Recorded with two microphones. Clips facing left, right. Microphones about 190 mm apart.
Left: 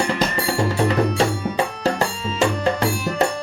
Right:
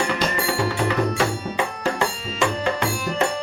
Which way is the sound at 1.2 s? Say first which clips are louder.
Left 3 dB; 35° left (ahead or behind).